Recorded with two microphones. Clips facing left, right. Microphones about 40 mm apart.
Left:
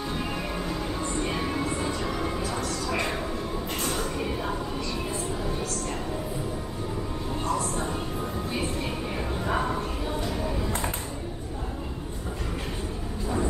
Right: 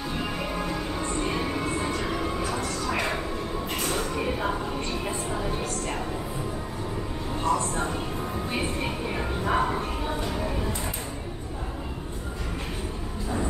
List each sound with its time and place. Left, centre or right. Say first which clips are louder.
0.6 s music: right 1 dB; centre
3.9 s train: right 2 dB; centre
7.4 s music: right 3 dB; right
8.5 s train: right 1 dB; right
9.4 s bow-wow: right 3 dB; centre
10.3 s music: even; centre